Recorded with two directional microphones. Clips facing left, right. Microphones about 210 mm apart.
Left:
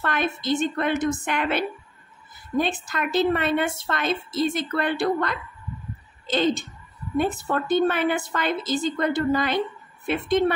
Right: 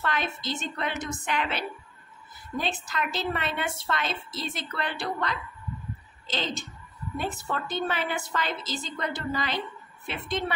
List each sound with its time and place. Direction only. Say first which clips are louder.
0.0 s a woman's voice: left 5 dB; 50° left (ahead or behind)